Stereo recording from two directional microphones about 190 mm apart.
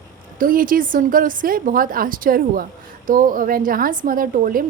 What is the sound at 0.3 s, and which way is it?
Speech, 45° right (ahead or behind).